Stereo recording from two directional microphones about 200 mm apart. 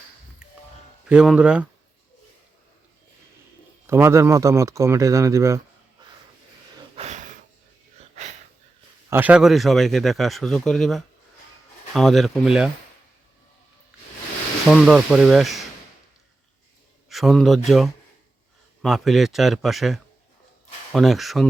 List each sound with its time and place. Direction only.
1.0 s speech: 5° right (ahead or behind)
3.8 s speech: 15° right (ahead or behind)
6.9 s a sound: 35° right (ahead or behind)
9.0 s speech: 10° right (ahead or behind)
14.7 s speech: centre (ahead or behind)
17.1 s speech: centre (ahead or behind)